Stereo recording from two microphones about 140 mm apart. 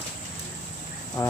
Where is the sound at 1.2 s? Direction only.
20° left (ahead or behind).